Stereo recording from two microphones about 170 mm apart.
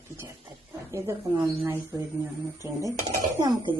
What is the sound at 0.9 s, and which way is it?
Speech, 15° right (ahead or behind).